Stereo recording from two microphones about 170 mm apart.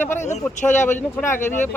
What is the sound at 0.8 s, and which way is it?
Speech, 15° left (ahead or behind).